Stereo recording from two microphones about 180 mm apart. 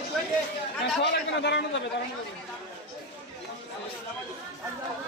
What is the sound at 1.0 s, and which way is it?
Speech, 70° left (ahead or behind).